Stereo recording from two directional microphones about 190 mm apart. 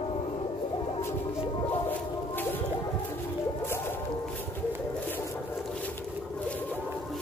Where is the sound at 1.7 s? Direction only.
10° left (ahead or behind).